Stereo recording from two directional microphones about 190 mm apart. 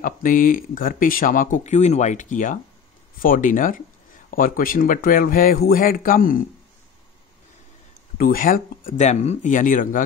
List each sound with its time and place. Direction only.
0.0 s speech: 45° left (ahead or behind)
8.2 s speech: 45° left (ahead or behind)